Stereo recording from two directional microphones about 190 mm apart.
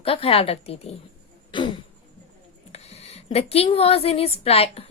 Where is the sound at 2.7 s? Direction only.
35° left (ahead or behind).